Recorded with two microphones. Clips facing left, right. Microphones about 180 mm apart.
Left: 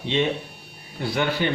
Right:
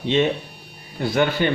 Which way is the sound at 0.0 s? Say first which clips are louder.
Right 4 dB; 50° right (ahead or behind).